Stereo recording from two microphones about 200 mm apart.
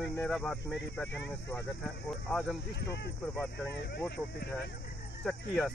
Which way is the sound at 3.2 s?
10° left (ahead or behind).